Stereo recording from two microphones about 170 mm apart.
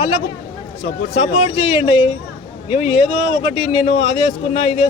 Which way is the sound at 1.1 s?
30° left (ahead or behind).